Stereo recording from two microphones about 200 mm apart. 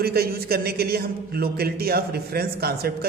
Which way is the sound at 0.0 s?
50° right (ahead or behind).